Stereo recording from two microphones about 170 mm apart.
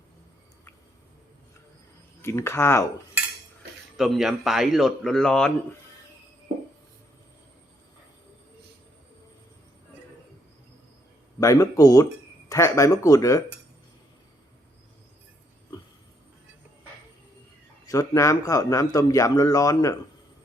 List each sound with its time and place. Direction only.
2.2 s speech: 15° left (ahead or behind)
3.9 s speech: centre (ahead or behind)
11.3 s a man's voice: 20° left (ahead or behind)
17.8 s a man's voice: 20° left (ahead or behind)